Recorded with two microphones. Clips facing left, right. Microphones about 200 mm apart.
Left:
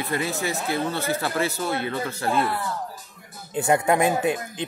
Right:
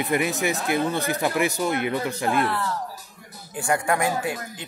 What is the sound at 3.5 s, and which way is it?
Speech, 20° left (ahead or behind).